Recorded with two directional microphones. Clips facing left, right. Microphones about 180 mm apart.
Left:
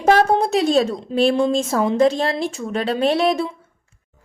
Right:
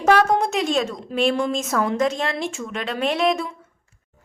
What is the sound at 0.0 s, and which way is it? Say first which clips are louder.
A woman's voice: left 2 dB; 30° left (ahead or behind).